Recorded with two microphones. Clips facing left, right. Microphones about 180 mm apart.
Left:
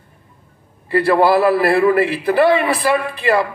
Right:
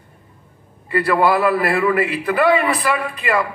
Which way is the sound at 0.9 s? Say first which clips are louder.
Left 3 dB; 30° left (ahead or behind).